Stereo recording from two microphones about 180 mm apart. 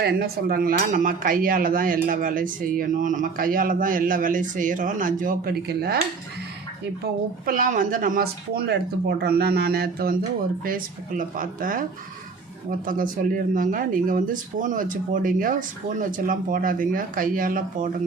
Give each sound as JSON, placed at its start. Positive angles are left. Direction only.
{"t": 0.0, "sound": "speech", "side_deg": -60}
{"t": 7.0, "sound": "speech", "side_deg": -50}